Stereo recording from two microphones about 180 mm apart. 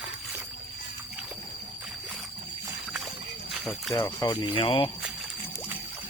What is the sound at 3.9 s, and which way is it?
Speech, 20° left (ahead or behind).